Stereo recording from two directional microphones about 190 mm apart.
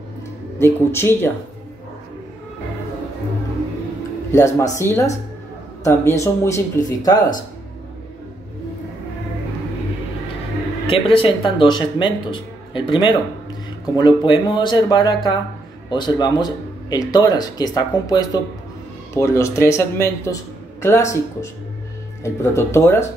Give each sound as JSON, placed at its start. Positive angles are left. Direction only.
{"t": 0.6, "sound": "speech", "side_deg": 15}
{"t": 4.3, "sound": "speech", "side_deg": 15}
{"t": 10.9, "sound": "speech", "side_deg": 30}